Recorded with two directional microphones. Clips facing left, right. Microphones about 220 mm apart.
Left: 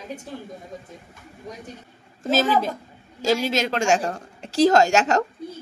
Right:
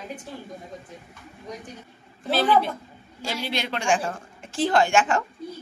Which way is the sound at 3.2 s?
45° left (ahead or behind).